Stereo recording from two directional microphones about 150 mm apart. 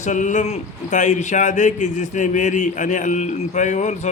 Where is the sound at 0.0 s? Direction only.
55° left (ahead or behind).